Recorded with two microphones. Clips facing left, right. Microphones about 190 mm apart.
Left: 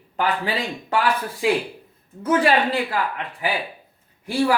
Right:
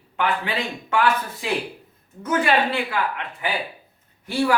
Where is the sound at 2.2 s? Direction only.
35° left (ahead or behind).